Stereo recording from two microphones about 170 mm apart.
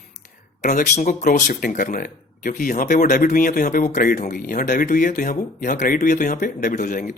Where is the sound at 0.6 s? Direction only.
50° left (ahead or behind).